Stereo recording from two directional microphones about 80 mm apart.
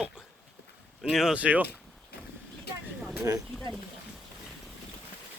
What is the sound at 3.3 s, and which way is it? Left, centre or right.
Speech, right.